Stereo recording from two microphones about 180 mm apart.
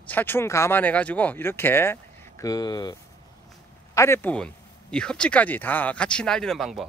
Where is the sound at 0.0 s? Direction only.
10° left (ahead or behind).